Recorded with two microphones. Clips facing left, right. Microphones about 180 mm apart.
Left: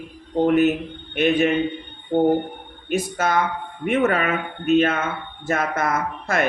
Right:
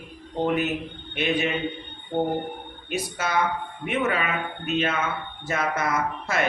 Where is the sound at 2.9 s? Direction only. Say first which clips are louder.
Left 5 dB; 50° left (ahead or behind).